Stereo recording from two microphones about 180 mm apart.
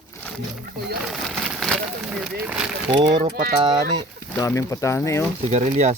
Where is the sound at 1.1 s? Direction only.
Centre (ahead or behind).